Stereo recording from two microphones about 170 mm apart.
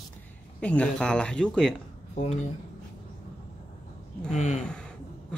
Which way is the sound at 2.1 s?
40° left (ahead or behind).